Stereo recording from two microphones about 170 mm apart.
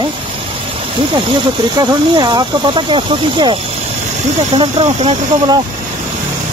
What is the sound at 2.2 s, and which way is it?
Speech, 25° right (ahead or behind).